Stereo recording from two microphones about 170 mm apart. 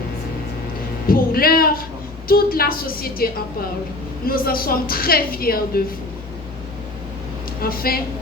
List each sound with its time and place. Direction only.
1.0 s speech: 60° left (ahead or behind)
4.3 s speech: 60° left (ahead or behind)
7.6 s speech: 60° left (ahead or behind)